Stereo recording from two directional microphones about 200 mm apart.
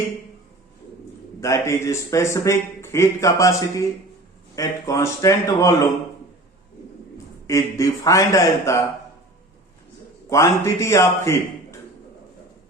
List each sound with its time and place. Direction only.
1.4 s a man's voice: 15° left (ahead or behind)
7.4 s a man's voice: 15° left (ahead or behind)
10.2 s a man's voice: 15° left (ahead or behind)